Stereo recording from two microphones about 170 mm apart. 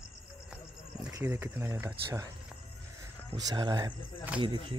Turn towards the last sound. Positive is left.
turn(degrees=-30)  # may be behind; listen again after turning